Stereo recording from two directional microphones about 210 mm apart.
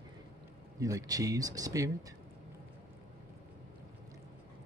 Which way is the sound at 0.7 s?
15° right (ahead or behind).